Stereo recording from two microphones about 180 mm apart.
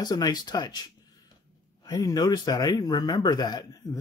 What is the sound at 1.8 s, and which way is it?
Speech, 20° left (ahead or behind).